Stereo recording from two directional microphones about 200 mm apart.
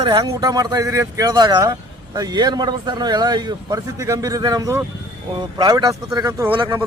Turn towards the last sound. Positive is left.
turn(degrees=-25)  # may be behind; listen again after turning